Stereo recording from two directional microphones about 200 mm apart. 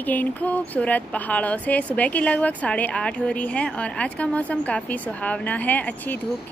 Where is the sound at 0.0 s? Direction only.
10° left (ahead or behind).